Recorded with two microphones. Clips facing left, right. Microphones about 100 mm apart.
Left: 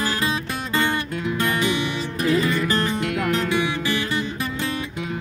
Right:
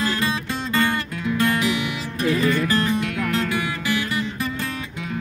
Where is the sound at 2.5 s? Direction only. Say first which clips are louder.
Right 2 dB; 30° left (ahead or behind).